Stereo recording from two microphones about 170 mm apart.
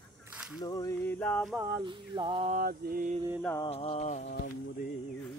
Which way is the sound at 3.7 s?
35° left (ahead or behind).